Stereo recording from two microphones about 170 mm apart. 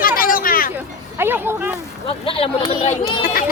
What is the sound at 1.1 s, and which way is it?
Speech, 15° right (ahead or behind).